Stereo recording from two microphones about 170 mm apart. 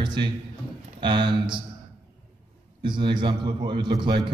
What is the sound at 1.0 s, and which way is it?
Speech, 30° right (ahead or behind).